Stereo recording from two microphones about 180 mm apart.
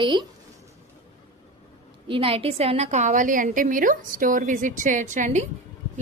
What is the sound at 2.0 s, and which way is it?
A woman's voice, 30° right (ahead or behind).